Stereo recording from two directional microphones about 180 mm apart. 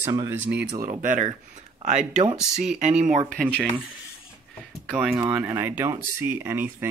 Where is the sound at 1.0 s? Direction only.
45° right (ahead or behind).